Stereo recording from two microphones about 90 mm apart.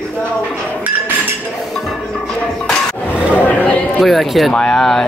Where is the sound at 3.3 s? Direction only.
20° left (ahead or behind).